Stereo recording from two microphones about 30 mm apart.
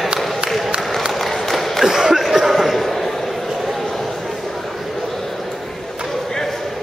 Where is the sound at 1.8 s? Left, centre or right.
Centre.